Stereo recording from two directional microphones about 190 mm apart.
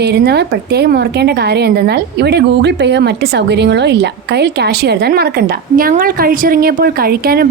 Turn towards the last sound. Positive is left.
turn(degrees=-55)  # may be behind; listen again after turning